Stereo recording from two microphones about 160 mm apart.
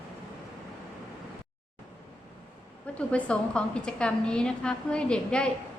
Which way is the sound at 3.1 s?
5° left (ahead or behind).